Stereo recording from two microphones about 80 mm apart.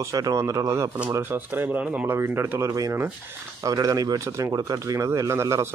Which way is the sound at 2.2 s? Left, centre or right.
Right.